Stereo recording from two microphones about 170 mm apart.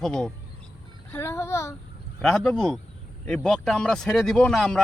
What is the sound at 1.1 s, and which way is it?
Speech, 15° left (ahead or behind).